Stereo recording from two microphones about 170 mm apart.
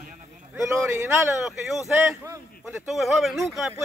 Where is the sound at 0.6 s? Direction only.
15° right (ahead or behind).